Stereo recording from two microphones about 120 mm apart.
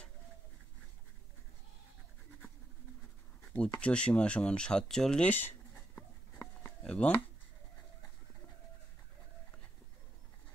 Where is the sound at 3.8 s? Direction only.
10° left (ahead or behind).